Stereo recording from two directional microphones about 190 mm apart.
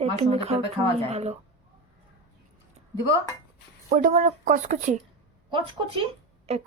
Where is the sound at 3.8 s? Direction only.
40° right (ahead or behind).